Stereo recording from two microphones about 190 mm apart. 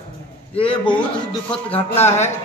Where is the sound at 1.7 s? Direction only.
10° left (ahead or behind).